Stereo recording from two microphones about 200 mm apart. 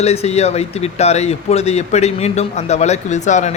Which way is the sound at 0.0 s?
30° left (ahead or behind).